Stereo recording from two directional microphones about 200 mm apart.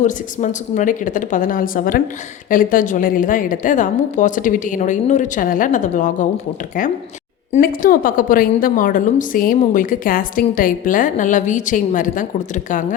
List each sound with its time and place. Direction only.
0.0 s a woman's voice: 40° left (ahead or behind)
7.5 s a woman's voice: 45° left (ahead or behind)